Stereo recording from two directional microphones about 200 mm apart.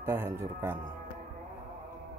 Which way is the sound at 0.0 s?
10° right (ahead or behind).